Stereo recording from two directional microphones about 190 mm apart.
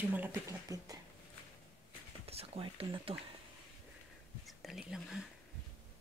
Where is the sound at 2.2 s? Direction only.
30° right (ahead or behind).